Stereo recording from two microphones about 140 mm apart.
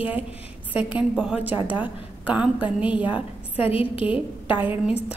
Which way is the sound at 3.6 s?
40° left (ahead or behind).